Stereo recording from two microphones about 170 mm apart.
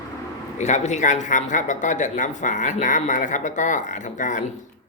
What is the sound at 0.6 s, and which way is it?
A woman's voice, 40° left (ahead or behind).